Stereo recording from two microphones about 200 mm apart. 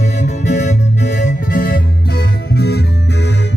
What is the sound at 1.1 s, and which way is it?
Music, 40° left (ahead or behind).